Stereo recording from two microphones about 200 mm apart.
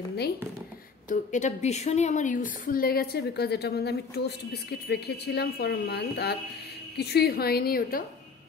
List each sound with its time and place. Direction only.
1.0 s a woman's voice: 40° left (ahead or behind)